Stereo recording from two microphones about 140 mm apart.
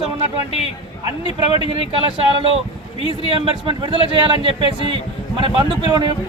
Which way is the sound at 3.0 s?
35° left (ahead or behind).